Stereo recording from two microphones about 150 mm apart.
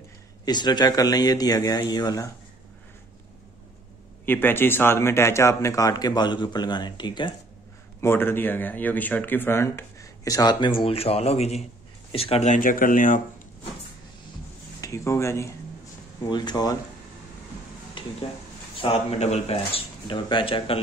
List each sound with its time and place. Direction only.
0.5 s speech: 30° left (ahead or behind)
4.3 s speech: 15° left (ahead or behind); by 7.3 s 30° left (ahead or behind)
8.0 s speech: 15° left (ahead or behind); by 13.2 s 60° left (ahead or behind)
14.8 s speech: 20° left (ahead or behind)
18.8 s speech: 40° left (ahead or behind)